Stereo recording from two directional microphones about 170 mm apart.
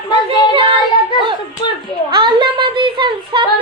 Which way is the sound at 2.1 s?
25° right (ahead or behind).